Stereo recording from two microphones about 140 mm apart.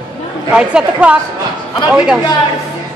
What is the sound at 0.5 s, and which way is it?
A woman's voice, 10° right (ahead or behind).